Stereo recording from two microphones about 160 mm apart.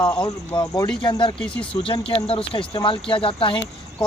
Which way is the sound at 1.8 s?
30° left (ahead or behind).